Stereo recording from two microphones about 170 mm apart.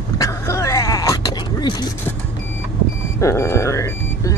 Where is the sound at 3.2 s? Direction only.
15° left (ahead or behind).